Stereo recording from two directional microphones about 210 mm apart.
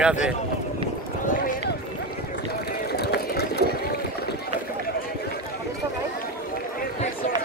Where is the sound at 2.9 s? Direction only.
50° left (ahead or behind).